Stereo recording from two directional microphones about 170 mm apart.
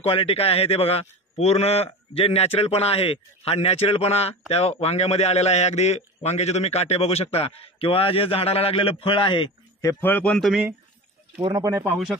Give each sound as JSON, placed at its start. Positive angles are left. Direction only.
{"t": 0.0, "sound": "a man's voice", "side_deg": 35}
{"t": 9.8, "sound": "a man's voice", "side_deg": 15}
{"t": 11.4, "sound": "speech", "side_deg": -25}